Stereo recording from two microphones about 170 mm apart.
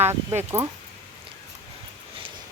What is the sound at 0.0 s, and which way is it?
Speech, 20° right (ahead or behind).